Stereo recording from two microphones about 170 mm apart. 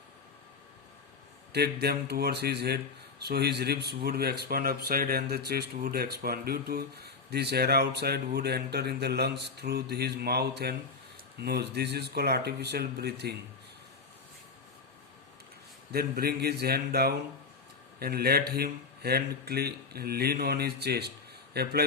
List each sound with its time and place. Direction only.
1.5 s speech: 70° right (ahead or behind)
15.9 s speech: 65° right (ahead or behind)